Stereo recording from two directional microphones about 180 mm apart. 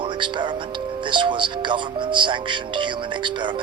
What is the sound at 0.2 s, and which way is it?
Speech, 25° right (ahead or behind).